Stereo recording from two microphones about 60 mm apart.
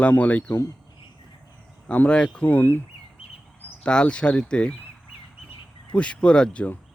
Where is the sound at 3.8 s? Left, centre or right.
Centre.